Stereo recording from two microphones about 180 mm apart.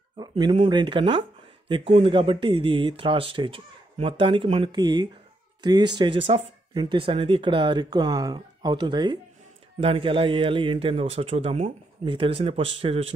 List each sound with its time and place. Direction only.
0.2 s speech: 25° right (ahead or behind)